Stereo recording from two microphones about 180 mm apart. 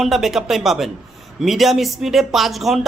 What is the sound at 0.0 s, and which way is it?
Speech, centre (ahead or behind).